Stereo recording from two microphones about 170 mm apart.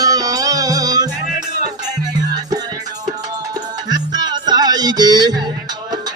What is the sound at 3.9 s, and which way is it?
Music, 25° right (ahead or behind).